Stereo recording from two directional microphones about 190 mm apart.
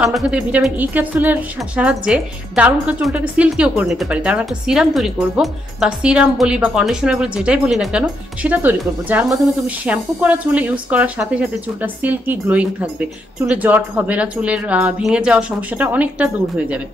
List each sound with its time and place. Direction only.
0.0 s a woman's voice: 5° right (ahead or behind)